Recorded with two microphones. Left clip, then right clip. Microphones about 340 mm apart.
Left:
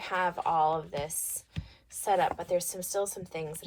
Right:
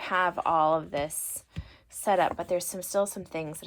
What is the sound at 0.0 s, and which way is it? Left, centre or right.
Speech, centre.